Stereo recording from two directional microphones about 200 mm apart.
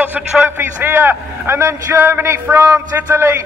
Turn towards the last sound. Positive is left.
turn(degrees=-15)  # may be behind; listen again after turning